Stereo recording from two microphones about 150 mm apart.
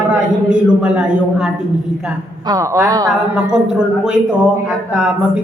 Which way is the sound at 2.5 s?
20° right (ahead or behind).